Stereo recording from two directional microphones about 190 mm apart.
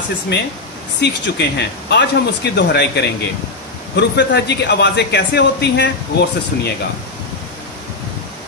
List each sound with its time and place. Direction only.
0.3 s a man's voice: 65° left (ahead or behind)